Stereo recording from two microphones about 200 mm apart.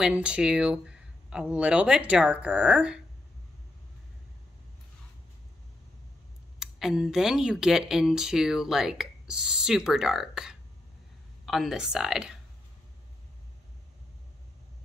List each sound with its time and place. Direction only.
0.0 s speech: 5° right (ahead or behind)
6.6 s speech: centre (ahead or behind)